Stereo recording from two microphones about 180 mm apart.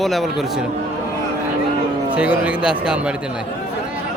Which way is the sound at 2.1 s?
5° right (ahead or behind).